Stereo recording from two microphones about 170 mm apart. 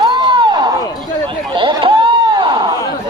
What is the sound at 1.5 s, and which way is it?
Chatter, 30° right (ahead or behind).